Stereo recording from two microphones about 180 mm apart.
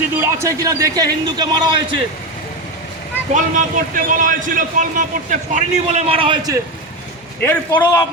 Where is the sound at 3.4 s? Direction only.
45° right (ahead or behind); by 6.5 s 30° right (ahead or behind).